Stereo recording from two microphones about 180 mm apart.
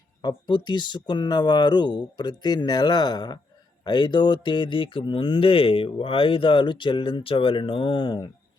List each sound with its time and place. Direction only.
0.2 s speech: 25° left (ahead or behind)